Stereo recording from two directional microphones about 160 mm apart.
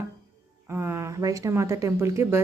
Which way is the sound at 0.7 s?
15° right (ahead or behind).